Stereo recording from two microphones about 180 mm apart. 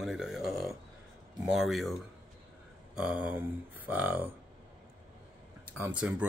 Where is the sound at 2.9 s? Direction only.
5° right (ahead or behind).